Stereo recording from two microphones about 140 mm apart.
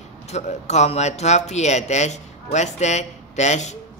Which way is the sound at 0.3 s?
55° left (ahead or behind).